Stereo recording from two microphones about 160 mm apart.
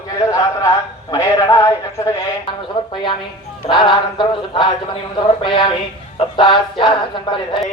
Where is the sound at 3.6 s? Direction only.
30° left (ahead or behind).